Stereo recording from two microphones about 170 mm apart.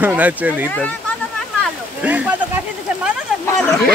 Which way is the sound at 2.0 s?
10° right (ahead or behind).